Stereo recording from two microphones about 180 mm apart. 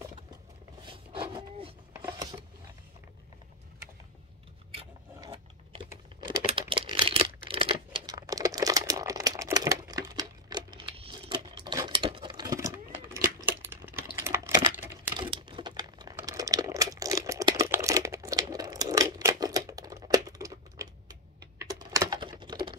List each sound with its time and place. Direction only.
0.8 s wood: 30° right (ahead or behind)
6.7 s computer keyboard: 30° right (ahead or behind)
13.1 s a sound: 15° right (ahead or behind)
14.2 s computer keyboard: 15° right (ahead or behind)
15.1 s crumpling: 25° right (ahead or behind)